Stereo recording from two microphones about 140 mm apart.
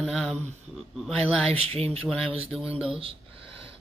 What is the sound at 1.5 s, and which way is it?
Speech, 45° right (ahead or behind).